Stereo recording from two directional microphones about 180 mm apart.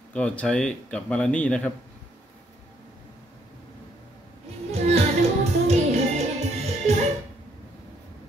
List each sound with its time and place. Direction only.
0.1 s speech: 5° left (ahead or behind)
4.6 s music: 35° right (ahead or behind)